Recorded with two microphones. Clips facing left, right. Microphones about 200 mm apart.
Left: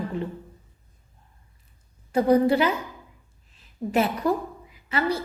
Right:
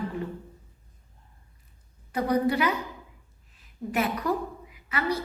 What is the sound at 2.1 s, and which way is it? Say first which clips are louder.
Speech: left 6 dB; 30° left (ahead or behind).